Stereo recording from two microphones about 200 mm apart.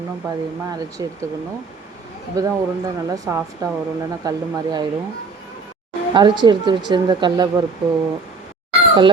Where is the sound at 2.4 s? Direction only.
15° right (ahead or behind).